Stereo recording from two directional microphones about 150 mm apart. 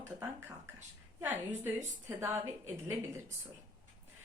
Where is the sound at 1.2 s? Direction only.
15° right (ahead or behind).